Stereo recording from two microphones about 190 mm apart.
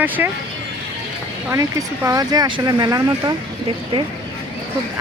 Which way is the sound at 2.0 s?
20° right (ahead or behind).